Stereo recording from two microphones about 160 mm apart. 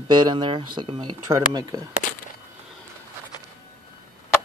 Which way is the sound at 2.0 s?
55° left (ahead or behind).